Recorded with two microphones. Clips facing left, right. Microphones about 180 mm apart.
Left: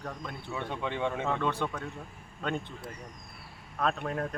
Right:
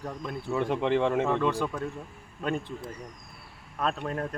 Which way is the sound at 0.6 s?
85° right.